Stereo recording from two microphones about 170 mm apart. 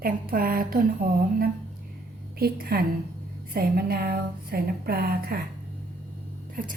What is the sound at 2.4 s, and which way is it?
Speech, 60° right (ahead or behind).